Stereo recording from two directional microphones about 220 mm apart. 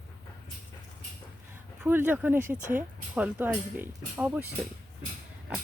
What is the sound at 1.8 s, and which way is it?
Speech, 10° right (ahead or behind).